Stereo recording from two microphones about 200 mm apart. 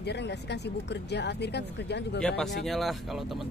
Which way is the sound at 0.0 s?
55° left (ahead or behind).